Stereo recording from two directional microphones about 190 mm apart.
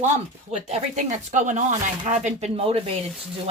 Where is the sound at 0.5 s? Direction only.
35° right (ahead or behind).